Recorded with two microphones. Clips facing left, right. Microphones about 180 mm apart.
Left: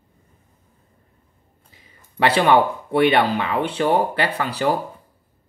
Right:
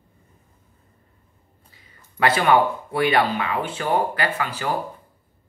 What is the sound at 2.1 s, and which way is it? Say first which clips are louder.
Speech: left 2 dB; 30° left (ahead or behind).